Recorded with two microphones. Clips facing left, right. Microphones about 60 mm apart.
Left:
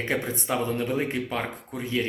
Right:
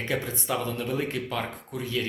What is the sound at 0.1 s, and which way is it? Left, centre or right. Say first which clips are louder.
Speech: left 1 dB; left.